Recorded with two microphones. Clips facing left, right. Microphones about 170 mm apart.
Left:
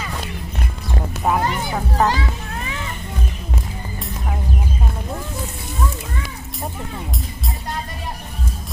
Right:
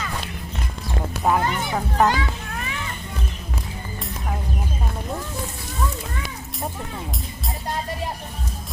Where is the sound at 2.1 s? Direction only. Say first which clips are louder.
Left 1 dB; 35° left (ahead or behind).